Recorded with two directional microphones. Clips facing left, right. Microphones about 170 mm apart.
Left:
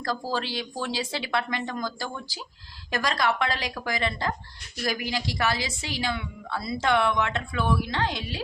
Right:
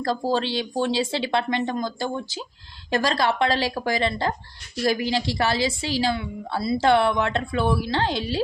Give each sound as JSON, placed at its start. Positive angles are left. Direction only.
{"t": 0.0, "sound": "a woman's voice", "side_deg": -25}